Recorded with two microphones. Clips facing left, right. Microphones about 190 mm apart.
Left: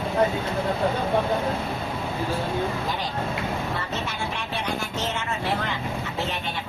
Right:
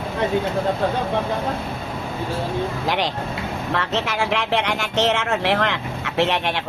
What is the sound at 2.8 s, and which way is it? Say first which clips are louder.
Speech: right 5 dB; 90° right.